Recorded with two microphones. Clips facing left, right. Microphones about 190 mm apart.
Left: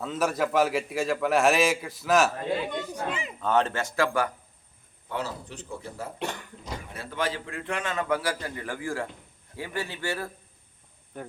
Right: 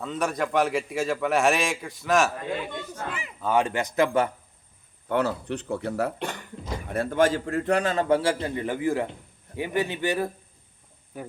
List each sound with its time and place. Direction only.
0.0 s a man's voice: centre (ahead or behind)
2.6 s speech: 15° left (ahead or behind)
3.4 s speech: 10° right (ahead or behind)
5.0 s speech: 60° right (ahead or behind)
6.8 s a man's voice: 50° right (ahead or behind); by 10.2 s 20° right (ahead or behind)
11.1 s speech: 5° right (ahead or behind)